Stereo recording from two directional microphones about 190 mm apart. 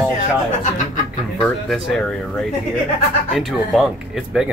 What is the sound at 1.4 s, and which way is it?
Speech, centre (ahead or behind).